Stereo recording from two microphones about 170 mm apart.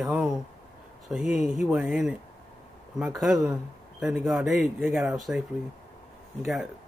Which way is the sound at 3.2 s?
5° right (ahead or behind).